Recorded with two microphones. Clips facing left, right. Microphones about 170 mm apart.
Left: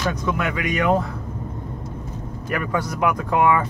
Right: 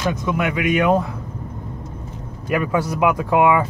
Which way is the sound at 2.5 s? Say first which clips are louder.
Right 4 dB; 10° right (ahead or behind).